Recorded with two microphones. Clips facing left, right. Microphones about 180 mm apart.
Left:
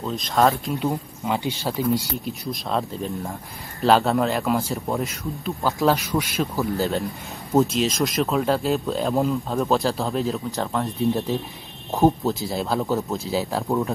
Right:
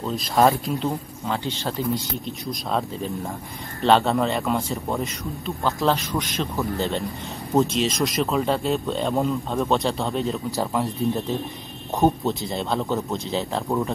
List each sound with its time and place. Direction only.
0.0 s speech: centre (ahead or behind)
1.2 s speech: 15° left (ahead or behind)
2.2 s speech: centre (ahead or behind)